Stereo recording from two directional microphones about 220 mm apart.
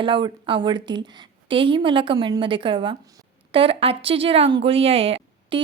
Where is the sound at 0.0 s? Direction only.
20° right (ahead or behind).